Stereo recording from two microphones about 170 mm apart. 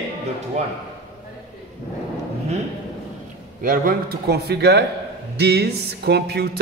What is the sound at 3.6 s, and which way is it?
Speech, 55° right (ahead or behind).